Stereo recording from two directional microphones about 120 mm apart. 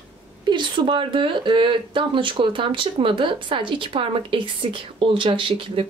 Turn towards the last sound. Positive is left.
turn(degrees=-45)  # may be behind; listen again after turning